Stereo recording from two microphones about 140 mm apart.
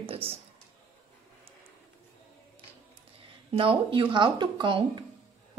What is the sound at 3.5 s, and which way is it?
A woman's voice, 40° right (ahead or behind).